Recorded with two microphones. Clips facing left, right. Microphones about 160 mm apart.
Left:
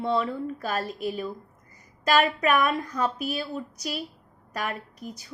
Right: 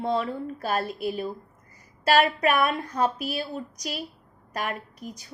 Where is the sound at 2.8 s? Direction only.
35° right (ahead or behind).